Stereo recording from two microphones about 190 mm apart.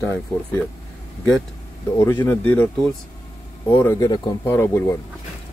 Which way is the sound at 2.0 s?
15° left (ahead or behind).